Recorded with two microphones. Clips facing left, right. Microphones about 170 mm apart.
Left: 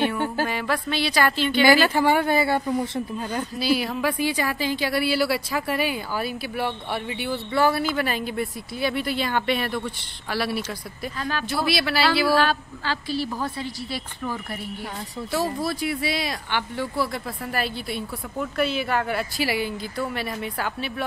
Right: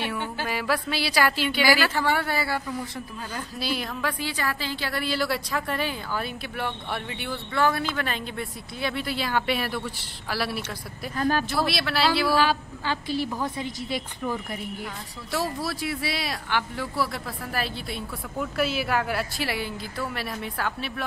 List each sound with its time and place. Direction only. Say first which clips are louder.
0.5 s a woman's voice: left 1 dB; 5° right (ahead or behind)
1.6 s speech: left 6 dB; 20° left (ahead or behind)
3.5 s a woman's voice: left 7 dB; 5° left (ahead or behind)
3.9 s a woman's voice: left 6 dB; 15° left (ahead or behind)
11.1 s speech: right 6 dB; 45° right (ahead or behind)
11.4 s a woman's voice: left 2 dB; centre (ahead or behind)
12.4 s a woman's voice: left 1 dB; 15° right (ahead or behind)
15.6 s a woman's voice: left 4 dB; centre (ahead or behind)